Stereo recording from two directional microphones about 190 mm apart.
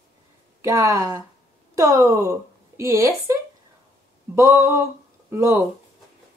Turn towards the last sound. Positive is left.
turn(degrees=-15)  # may be behind; listen again after turning